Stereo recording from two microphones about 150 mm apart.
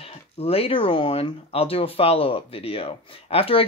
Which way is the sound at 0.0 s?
40° left (ahead or behind).